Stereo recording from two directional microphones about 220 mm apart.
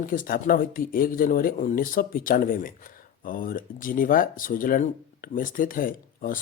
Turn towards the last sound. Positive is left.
turn(degrees=40)  # may be behind; listen again after turning